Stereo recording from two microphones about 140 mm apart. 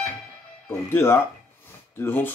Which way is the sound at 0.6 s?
15° left (ahead or behind).